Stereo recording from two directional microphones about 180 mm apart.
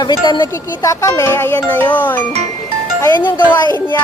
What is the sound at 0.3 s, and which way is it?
Speech, 25° left (ahead or behind).